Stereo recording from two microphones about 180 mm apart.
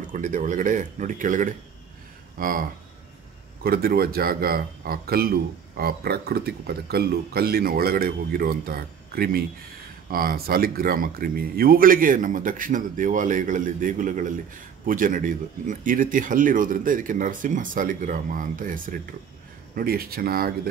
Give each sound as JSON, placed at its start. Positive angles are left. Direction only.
{"t": 0.0, "sound": "speech", "side_deg": -45}
{"t": 3.6, "sound": "a man's voice", "side_deg": -55}